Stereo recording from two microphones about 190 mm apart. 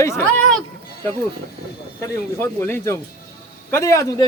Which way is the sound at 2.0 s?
15° left (ahead or behind).